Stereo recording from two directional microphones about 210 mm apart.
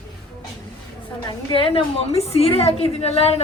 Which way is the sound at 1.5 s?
25° left (ahead or behind).